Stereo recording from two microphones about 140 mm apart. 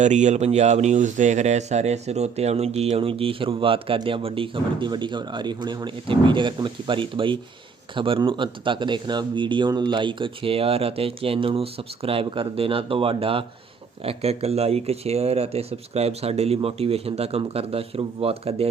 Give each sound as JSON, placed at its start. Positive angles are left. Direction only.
{"t": 0.0, "sound": "speech", "side_deg": -55}